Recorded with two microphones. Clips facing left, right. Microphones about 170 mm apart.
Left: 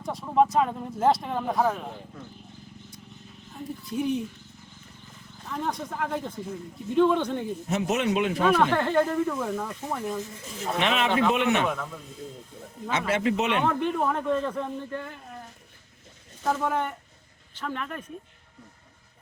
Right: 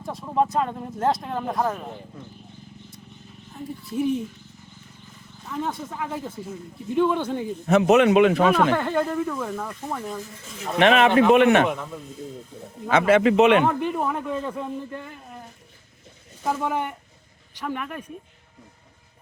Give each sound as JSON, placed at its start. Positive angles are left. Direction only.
{"t": 0.0, "sound": "speech", "side_deg": 0}
{"t": 3.5, "sound": "speech", "side_deg": 0}
{"t": 5.5, "sound": "speech", "side_deg": 0}
{"t": 7.7, "sound": "a man's voice", "side_deg": -70}
{"t": 8.4, "sound": "speech", "side_deg": -5}
{"t": 10.8, "sound": "a man's voice", "side_deg": -60}
{"t": 13.0, "sound": "speech", "side_deg": -90}
{"t": 13.7, "sound": "a man's voice", "side_deg": -10}
{"t": 16.4, "sound": "a man's voice", "side_deg": -10}